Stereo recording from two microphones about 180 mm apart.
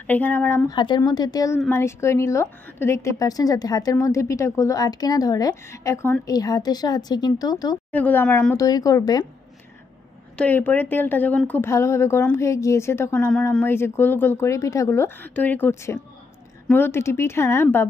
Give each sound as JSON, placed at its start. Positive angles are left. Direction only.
{"t": 0.0, "sound": "speech", "side_deg": 10}
{"t": 0.7, "sound": "a woman's voice", "side_deg": 25}
{"t": 7.9, "sound": "speech", "side_deg": 10}
{"t": 10.3, "sound": "speech", "side_deg": 10}